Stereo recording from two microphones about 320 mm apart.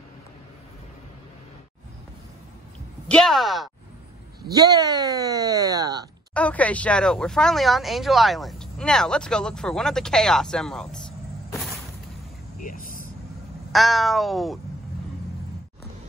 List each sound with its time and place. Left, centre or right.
3.1 s speech: centre
4.5 s speech: centre
6.3 s speech: centre
12.6 s vehicle: left
13.7 s speech: centre